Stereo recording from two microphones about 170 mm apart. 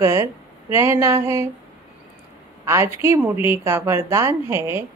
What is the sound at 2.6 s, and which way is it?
Speech, 15° right (ahead or behind).